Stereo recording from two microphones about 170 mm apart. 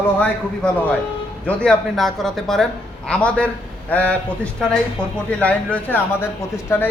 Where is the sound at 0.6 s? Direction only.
5° left (ahead or behind).